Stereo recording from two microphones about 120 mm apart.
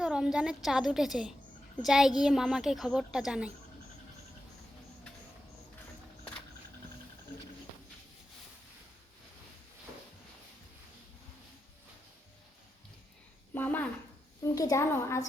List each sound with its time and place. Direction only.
0.0 s a woman's voice: 5° right (ahead or behind)
13.5 s a sound: 15° left (ahead or behind)
14.4 s a woman's voice: 30° left (ahead or behind)